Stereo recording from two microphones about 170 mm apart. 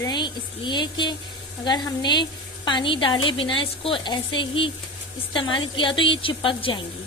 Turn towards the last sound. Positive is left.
turn(degrees=30)  # may be behind; listen again after turning